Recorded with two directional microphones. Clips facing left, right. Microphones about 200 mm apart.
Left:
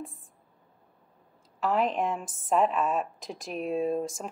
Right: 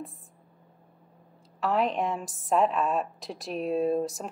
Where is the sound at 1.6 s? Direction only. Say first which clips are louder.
Even; centre (ahead or behind).